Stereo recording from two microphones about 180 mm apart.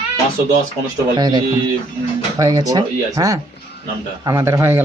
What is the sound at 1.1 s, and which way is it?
Speech, 25° right (ahead or behind).